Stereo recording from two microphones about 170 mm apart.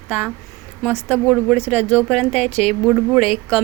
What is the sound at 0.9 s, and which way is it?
Speech, 10° right (ahead or behind).